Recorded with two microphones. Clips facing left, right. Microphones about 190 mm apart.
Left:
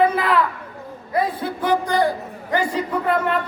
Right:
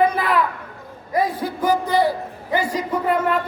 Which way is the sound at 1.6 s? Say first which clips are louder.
Right 1 dB; 5° right (ahead or behind).